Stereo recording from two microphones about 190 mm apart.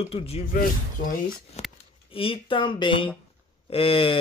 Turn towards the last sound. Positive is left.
turn(degrees=30)  # may be behind; listen again after turning